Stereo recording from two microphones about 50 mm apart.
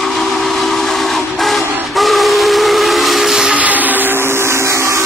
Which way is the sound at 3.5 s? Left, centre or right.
Right.